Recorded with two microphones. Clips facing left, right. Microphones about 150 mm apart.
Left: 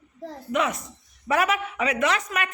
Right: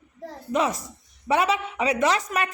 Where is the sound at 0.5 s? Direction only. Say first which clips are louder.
Right 1 dB; 35° right (ahead or behind).